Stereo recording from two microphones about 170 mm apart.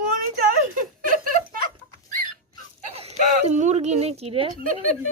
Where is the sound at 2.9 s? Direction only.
40° right (ahead or behind).